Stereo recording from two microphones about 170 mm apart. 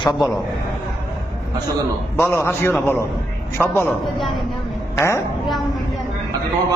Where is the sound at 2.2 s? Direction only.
15° left (ahead or behind).